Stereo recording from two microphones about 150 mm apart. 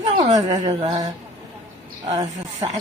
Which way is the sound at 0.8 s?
30° right (ahead or behind).